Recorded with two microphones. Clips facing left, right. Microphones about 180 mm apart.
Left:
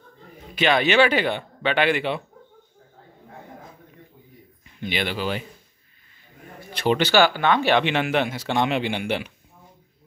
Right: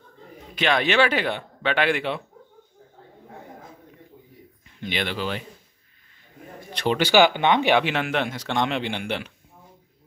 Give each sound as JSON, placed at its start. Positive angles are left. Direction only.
{"t": 0.6, "sound": "speech", "side_deg": 0}
{"t": 4.7, "sound": "speech", "side_deg": 5}
{"t": 6.7, "sound": "speech", "side_deg": 5}
{"t": 7.0, "sound": "speech", "side_deg": -15}
{"t": 7.8, "sound": "speech", "side_deg": 0}